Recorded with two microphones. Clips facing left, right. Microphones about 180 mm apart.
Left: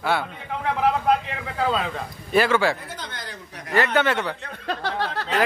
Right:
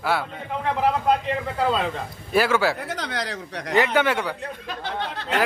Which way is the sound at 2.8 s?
75° right (ahead or behind).